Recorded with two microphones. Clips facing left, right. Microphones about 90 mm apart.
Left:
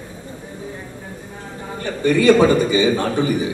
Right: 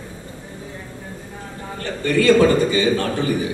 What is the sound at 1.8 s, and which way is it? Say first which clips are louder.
A man's voice: left 2 dB; 20° left (ahead or behind).